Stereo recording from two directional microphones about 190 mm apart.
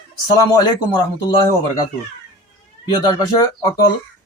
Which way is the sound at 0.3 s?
20° left (ahead or behind).